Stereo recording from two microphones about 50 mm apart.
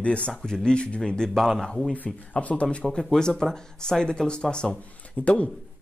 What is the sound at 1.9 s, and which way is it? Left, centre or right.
Speech, left.